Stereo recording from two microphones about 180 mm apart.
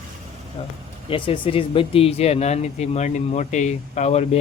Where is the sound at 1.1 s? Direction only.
30° left (ahead or behind).